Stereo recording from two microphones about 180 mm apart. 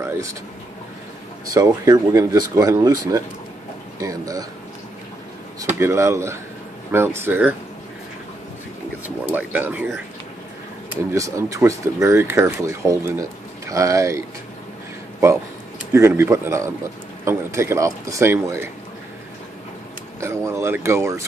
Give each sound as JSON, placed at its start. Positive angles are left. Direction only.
{"t": 0.0, "sound": "speech", "side_deg": -15}
{"t": 1.6, "sound": "speech", "side_deg": -20}
{"t": 5.8, "sound": "speech", "side_deg": -15}
{"t": 9.0, "sound": "speech", "side_deg": -10}
{"t": 11.1, "sound": "speech", "side_deg": -15}
{"t": 15.9, "sound": "speech", "side_deg": -15}
{"t": 20.2, "sound": "speech", "side_deg": -15}